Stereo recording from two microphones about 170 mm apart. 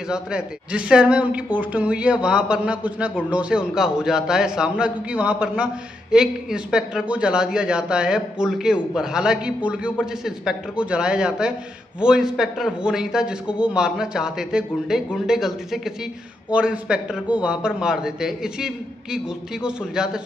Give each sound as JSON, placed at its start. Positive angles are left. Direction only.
{"t": 0.1, "sound": "a man's voice", "side_deg": -5}